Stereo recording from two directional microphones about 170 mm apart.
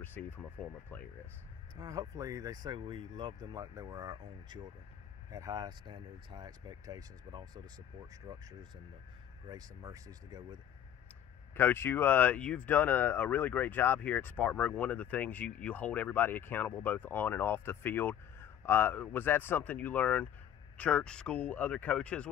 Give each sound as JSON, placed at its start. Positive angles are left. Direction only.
{"t": 0.0, "sound": "speech", "side_deg": 10}
{"t": 1.8, "sound": "speech", "side_deg": -20}
{"t": 9.5, "sound": "speech", "side_deg": -20}
{"t": 11.5, "sound": "speech", "side_deg": 10}